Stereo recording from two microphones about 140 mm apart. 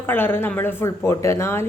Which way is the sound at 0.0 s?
15° left (ahead or behind).